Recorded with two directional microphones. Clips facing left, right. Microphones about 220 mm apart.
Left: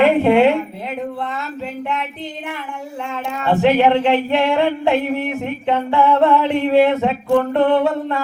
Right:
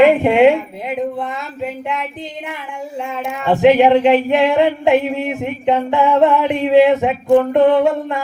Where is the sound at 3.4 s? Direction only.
15° right (ahead or behind).